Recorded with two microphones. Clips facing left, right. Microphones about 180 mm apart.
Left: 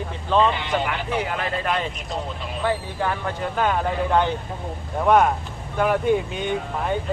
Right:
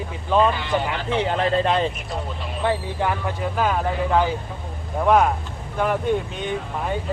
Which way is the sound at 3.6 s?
Centre (ahead or behind).